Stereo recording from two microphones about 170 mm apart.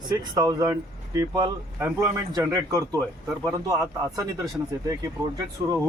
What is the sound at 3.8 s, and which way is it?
Speech, centre (ahead or behind).